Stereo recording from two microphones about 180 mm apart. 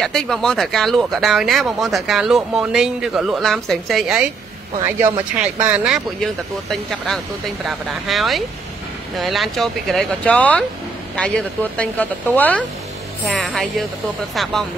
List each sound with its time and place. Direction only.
0.0 s speech: centre (ahead or behind)
4.7 s speech: 20° right (ahead or behind)
5.4 s a woman's voice: 10° right (ahead or behind)